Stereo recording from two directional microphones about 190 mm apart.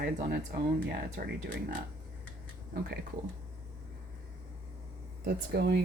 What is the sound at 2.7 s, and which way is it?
Speech, 55° right (ahead or behind).